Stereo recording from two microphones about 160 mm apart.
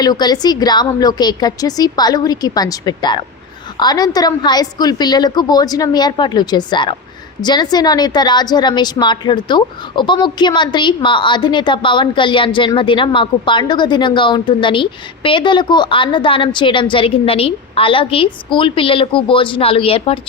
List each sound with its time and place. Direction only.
0.0 s a woman's voice: 25° left (ahead or behind)